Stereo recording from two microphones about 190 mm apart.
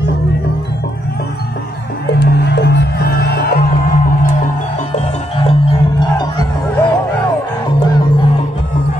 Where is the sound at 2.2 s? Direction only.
60° left (ahead or behind).